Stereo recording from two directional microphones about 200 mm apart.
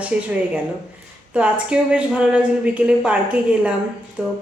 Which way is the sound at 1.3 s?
5° right (ahead or behind).